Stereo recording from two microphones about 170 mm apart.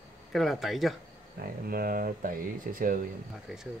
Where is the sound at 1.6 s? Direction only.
60° right (ahead or behind).